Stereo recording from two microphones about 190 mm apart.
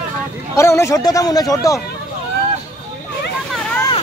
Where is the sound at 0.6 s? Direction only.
15° left (ahead or behind).